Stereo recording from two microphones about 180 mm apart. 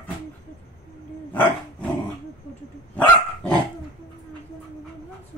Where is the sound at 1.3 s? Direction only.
10° left (ahead or behind).